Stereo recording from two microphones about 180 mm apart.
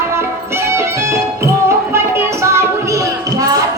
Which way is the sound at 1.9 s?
15° right (ahead or behind).